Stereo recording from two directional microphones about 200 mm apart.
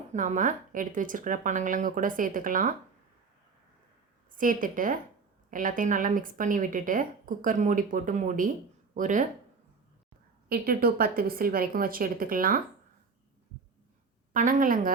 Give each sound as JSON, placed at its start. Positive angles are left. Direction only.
{"t": 0.1, "sound": "a woman's voice", "side_deg": -40}
{"t": 4.3, "sound": "a woman's voice", "side_deg": -40}
{"t": 10.5, "sound": "a woman's voice", "side_deg": -50}
{"t": 14.3, "sound": "a woman's voice", "side_deg": -40}